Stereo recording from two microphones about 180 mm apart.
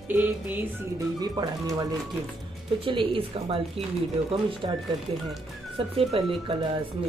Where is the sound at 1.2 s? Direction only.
20° right (ahead or behind).